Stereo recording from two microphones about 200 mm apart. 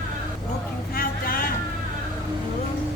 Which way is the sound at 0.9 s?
45° left (ahead or behind).